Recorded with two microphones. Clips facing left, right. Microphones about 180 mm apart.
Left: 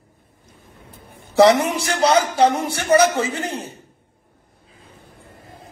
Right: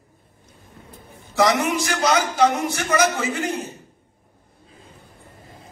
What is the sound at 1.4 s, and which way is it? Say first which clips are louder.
A man's voice: left 5 dB; 30° left (ahead or behind).